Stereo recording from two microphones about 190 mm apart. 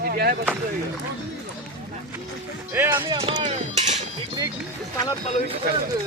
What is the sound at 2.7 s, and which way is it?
Speech, 15° right (ahead or behind).